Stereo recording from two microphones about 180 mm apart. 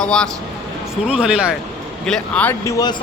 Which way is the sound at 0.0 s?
5° left (ahead or behind).